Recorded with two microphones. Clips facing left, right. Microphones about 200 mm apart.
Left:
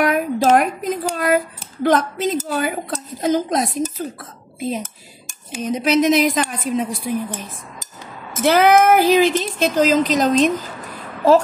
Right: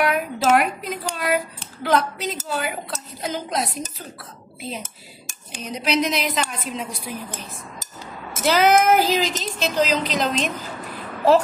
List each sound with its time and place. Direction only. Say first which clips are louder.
0.0 s speech: left 4 dB; 45° left (ahead or behind)
8.5 s speech: left 3 dB; 55° left (ahead or behind)